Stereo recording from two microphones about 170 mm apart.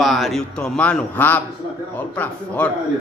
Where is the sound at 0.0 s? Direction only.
Centre (ahead or behind).